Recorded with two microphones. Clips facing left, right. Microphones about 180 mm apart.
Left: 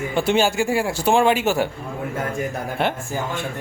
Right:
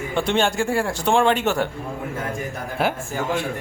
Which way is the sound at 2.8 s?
Centre (ahead or behind).